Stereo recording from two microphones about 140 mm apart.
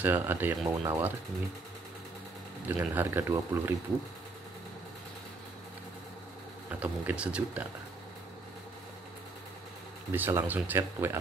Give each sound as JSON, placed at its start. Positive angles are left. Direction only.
{"t": 0.0, "sound": "speech", "side_deg": -15}
{"t": 2.7, "sound": "speech", "side_deg": -15}
{"t": 6.7, "sound": "speech", "side_deg": -10}
{"t": 10.1, "sound": "speech", "side_deg": -15}